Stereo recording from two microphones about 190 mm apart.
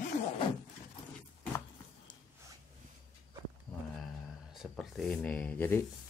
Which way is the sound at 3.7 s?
5° left (ahead or behind).